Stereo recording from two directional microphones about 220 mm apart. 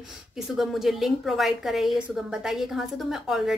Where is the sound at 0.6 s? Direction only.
Centre (ahead or behind).